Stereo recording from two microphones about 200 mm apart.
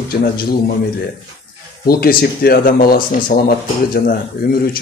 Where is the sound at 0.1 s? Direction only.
45° left (ahead or behind).